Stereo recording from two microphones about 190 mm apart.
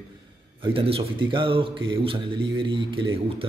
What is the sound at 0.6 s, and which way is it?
A man's voice, 30° right (ahead or behind).